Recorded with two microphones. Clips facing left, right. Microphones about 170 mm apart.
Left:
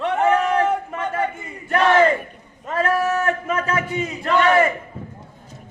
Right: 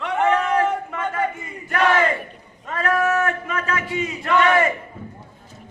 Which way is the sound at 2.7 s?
35° left (ahead or behind).